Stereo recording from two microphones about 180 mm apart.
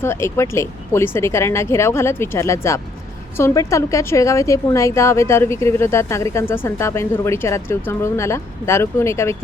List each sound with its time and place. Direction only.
0.0 s a woman's voice: 15° left (ahead or behind)